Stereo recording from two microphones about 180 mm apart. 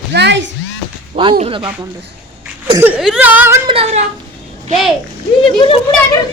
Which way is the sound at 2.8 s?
5° right (ahead or behind).